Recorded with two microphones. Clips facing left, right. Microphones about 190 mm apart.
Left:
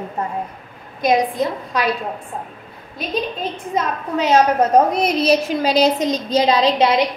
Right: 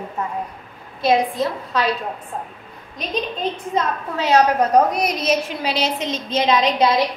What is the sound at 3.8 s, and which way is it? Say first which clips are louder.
A woman's voice: left 3 dB; 20° left (ahead or behind).